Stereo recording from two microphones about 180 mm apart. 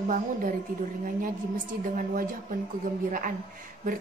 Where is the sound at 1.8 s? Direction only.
50° right (ahead or behind).